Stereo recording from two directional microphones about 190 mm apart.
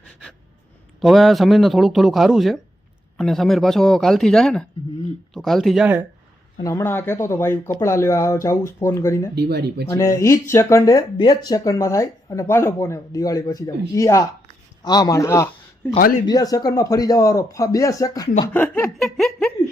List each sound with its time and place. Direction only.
1.0 s speech: centre (ahead or behind)
6.6 s speech: 15° left (ahead or behind)
9.3 s speech: 60° right (ahead or behind)
9.9 s speech: 15° left (ahead or behind)